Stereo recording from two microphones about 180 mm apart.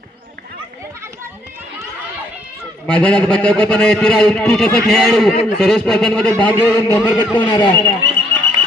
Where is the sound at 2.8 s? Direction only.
5° left (ahead or behind); by 7.8 s 25° left (ahead or behind).